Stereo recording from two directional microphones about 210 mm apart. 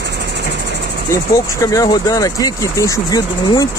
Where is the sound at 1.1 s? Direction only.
15° left (ahead or behind).